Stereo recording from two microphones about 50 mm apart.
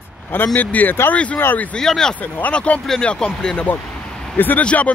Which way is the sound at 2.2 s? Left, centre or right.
Left.